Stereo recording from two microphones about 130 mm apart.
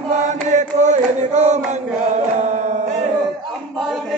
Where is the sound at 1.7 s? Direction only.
65° right (ahead or behind).